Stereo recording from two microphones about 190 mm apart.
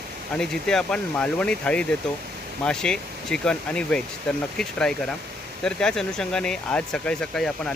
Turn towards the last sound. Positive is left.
turn(degrees=5)  # may be behind; listen again after turning